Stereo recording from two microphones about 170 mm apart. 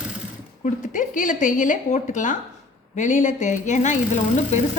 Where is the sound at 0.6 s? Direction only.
45° left (ahead or behind).